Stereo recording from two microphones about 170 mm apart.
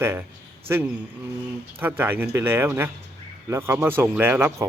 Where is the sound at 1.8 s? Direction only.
10° right (ahead or behind).